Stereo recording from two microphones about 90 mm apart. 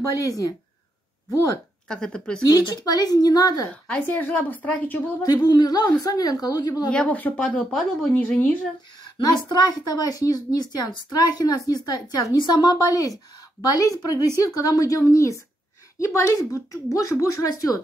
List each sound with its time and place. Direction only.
1.3 s speech: 40° left (ahead or behind)
1.9 s speech: 10° left (ahead or behind)
2.4 s a woman's voice: 45° left (ahead or behind)
3.8 s speech: 15° left (ahead or behind)
5.2 s a woman's voice: 50° left (ahead or behind)
6.9 s speech: 15° left (ahead or behind)
7.5 s speech: centre (ahead or behind)
9.0 s a woman's voice: 50° left (ahead or behind)